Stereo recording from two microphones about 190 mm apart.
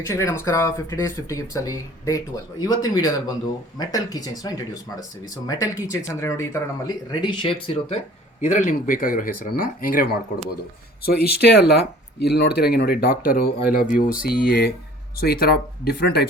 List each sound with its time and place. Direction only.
0.1 s speech: 15° left (ahead or behind)
8.4 s speech: 40° left (ahead or behind); by 16.2 s 60° left (ahead or behind)